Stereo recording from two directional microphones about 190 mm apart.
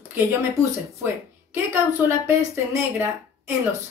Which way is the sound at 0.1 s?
15° right (ahead or behind).